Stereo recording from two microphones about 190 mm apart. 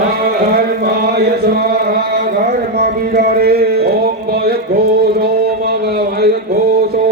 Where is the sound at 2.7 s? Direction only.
50° right (ahead or behind).